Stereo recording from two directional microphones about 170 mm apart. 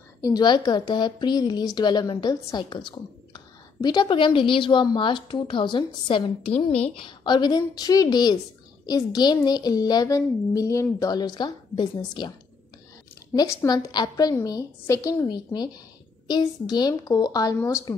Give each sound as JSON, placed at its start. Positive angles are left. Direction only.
{"t": 0.2, "sound": "a woman's voice", "side_deg": 25}
{"t": 13.3, "sound": "a woman's voice", "side_deg": 20}